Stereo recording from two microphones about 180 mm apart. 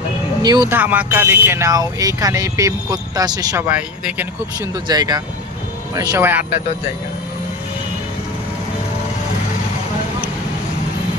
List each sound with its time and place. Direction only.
0.4 s speech: 20° right (ahead or behind)
0.7 s speech: 10° right (ahead or behind)
3.6 s speech: 10° right (ahead or behind)
4.6 s speech: 20° right (ahead or behind)